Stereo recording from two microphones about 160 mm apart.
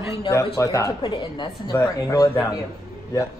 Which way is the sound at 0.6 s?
20° left (ahead or behind).